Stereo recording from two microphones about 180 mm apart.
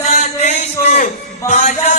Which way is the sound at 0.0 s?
40° left (ahead or behind).